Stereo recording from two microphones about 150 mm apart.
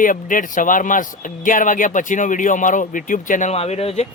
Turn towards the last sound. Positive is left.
turn(degrees=45)  # may be behind; listen again after turning